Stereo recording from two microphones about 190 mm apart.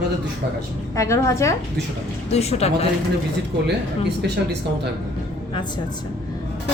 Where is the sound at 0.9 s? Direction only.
15° left (ahead or behind).